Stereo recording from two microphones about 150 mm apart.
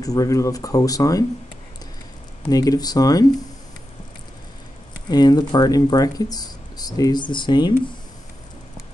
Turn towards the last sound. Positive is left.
turn(degrees=30)  # may be behind; listen again after turning